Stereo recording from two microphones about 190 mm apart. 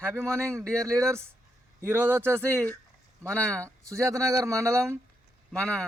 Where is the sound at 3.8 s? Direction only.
15° right (ahead or behind).